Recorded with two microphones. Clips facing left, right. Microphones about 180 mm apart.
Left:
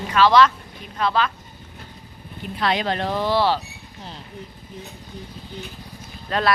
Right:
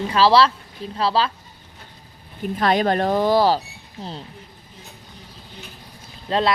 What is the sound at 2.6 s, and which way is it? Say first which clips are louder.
Speech: right 4 dB; 45° right (ahead or behind).